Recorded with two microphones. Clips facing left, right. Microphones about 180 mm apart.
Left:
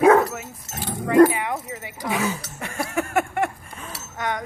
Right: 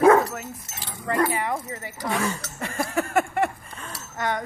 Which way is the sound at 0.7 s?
55° left (ahead or behind).